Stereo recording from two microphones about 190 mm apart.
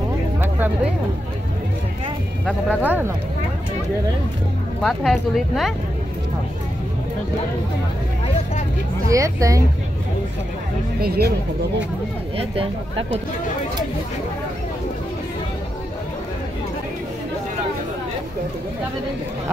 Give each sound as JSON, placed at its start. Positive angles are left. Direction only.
{"t": 0.4, "sound": "a sound", "side_deg": -10}
{"t": 2.7, "sound": "speech", "side_deg": -10}
{"t": 4.8, "sound": "speech", "side_deg": 0}
{"t": 9.1, "sound": "speech", "side_deg": -15}
{"t": 11.0, "sound": "speech", "side_deg": -55}
{"t": 12.4, "sound": "speech", "side_deg": -30}